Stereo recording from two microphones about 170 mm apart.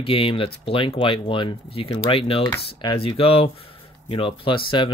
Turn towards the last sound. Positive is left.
turn(degrees=30)  # may be behind; listen again after turning